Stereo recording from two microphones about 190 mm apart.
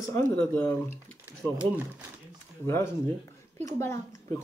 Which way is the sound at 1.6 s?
10° right (ahead or behind).